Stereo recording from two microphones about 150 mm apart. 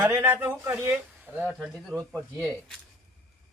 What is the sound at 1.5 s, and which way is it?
Speech, centre (ahead or behind).